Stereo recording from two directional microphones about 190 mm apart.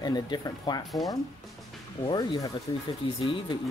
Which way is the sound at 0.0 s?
20° left (ahead or behind).